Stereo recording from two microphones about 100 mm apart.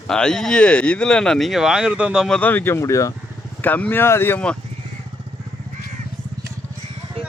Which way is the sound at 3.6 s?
15° left (ahead or behind).